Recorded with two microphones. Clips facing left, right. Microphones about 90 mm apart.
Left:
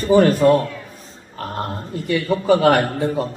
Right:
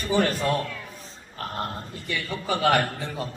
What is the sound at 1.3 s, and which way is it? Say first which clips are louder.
Oink: left 5 dB; 30° left (ahead or behind).